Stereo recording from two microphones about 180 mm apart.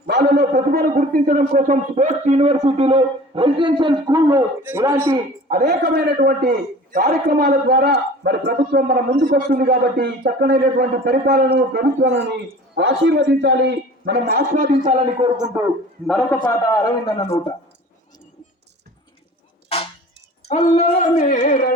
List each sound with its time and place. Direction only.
0.0 s a sound: 60° right (ahead or behind)
0.9 s a woman's voice: 50° right (ahead or behind)
2.2 s a man's voice: 35° right (ahead or behind); by 5.1 s 15° right (ahead or behind)
5.5 s a man's voice: 40° right (ahead or behind)
5.8 s a man's voice: 60° right (ahead or behind)
11.7 s a man's voice: 75° right (ahead or behind); by 14.7 s 50° right (ahead or behind)
14.8 s a man's voice: 25° right (ahead or behind)
16.0 s a man's voice: 5° left (ahead or behind)
16.6 s speech: 20° left (ahead or behind)
19.6 s music: 35° left (ahead or behind)
20.5 s dog: 40° left (ahead or behind)